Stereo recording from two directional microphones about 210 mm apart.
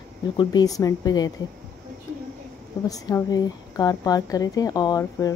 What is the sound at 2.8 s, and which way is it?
Speech, 15° left (ahead or behind).